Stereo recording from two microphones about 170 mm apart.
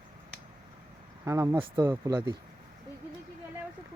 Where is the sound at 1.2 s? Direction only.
20° right (ahead or behind).